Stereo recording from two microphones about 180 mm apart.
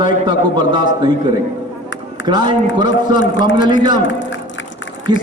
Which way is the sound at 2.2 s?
25° right (ahead or behind).